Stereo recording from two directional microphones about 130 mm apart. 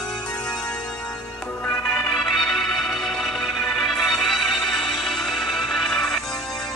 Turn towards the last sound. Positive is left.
turn(degrees=5)  # may be behind; listen again after turning